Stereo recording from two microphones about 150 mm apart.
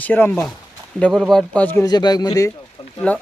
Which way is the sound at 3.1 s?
10° left (ahead or behind).